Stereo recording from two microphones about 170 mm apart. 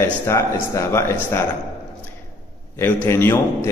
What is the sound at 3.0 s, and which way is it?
Speech, 15° left (ahead or behind).